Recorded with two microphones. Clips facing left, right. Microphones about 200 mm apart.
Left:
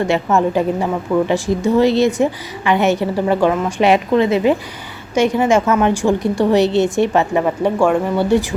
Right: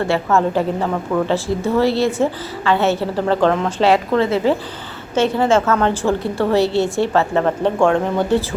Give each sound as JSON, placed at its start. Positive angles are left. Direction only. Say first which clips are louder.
{"t": 0.0, "sound": "a woman's voice", "louder": "left 1 dB", "side_deg": 15}